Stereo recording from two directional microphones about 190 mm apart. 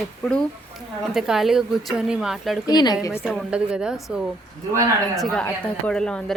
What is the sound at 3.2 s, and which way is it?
A woman's voice, centre (ahead or behind).